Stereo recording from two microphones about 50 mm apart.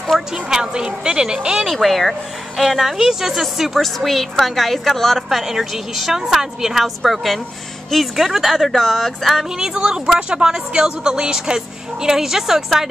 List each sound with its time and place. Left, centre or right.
0.3 s a woman's voice: centre
1.7 s speech: centre
9.6 s a woman's voice: centre